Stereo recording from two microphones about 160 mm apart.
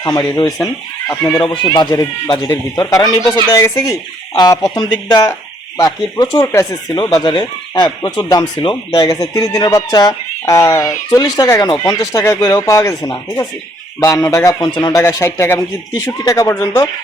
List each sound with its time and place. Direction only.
0.0 s speech: 20° left (ahead or behind)
1.0 s speech: 10° left (ahead or behind)
1.4 s speech: 25° left (ahead or behind)